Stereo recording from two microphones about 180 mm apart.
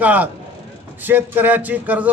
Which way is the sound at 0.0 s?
10° right (ahead or behind).